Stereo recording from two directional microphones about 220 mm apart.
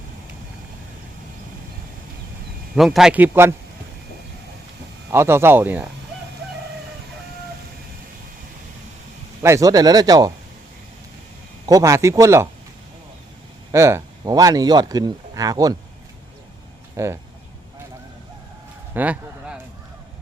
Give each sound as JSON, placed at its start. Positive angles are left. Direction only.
{"t": 2.7, "sound": "a man's voice", "side_deg": 0}
{"t": 5.1, "sound": "speech", "side_deg": -10}
{"t": 9.4, "sound": "speech", "side_deg": -15}
{"t": 11.6, "sound": "speech", "side_deg": -15}
{"t": 13.7, "sound": "speech", "side_deg": -15}
{"t": 16.9, "sound": "speech", "side_deg": -15}
{"t": 18.9, "sound": "a sound", "side_deg": -5}